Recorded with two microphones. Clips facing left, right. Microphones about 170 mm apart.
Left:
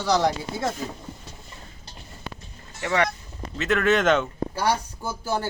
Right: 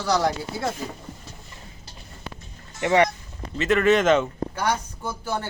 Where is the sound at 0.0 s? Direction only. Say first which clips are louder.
Left 1 dB; centre (ahead or behind).